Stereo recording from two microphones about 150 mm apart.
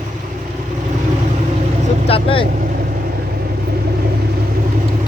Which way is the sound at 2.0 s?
40° left (ahead or behind).